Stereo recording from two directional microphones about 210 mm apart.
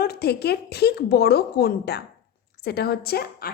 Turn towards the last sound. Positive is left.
turn(degrees=50)  # may be behind; listen again after turning